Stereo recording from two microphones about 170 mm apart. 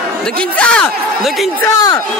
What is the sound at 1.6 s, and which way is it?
Speech, 20° left (ahead or behind).